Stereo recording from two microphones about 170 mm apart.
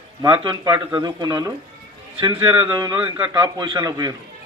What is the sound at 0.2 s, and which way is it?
A man's voice, 25° right (ahead or behind).